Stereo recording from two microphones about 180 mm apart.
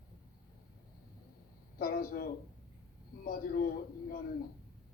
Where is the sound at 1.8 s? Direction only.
55° left (ahead or behind).